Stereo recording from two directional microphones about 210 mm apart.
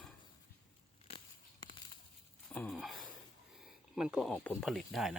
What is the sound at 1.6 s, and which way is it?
Bird flight, 25° left (ahead or behind).